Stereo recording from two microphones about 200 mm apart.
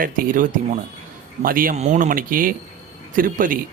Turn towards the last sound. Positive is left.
turn(degrees=-45)  # may be behind; listen again after turning